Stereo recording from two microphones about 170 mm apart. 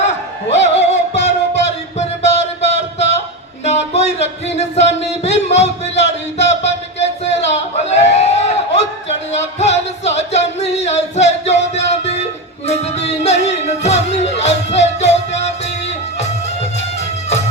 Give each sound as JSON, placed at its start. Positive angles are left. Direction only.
{"t": 0.5, "sound": "music", "side_deg": 40}
{"t": 3.6, "sound": "a sound", "side_deg": 40}
{"t": 8.1, "sound": "music", "side_deg": 40}